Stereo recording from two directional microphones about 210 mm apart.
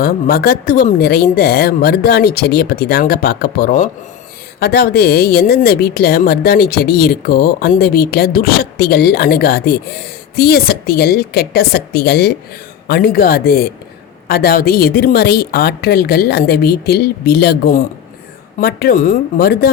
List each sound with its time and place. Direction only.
0.0 s a woman's voice: 45° left (ahead or behind)